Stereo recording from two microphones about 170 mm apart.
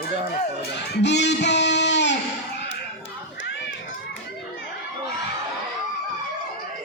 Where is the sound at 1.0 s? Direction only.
90° left.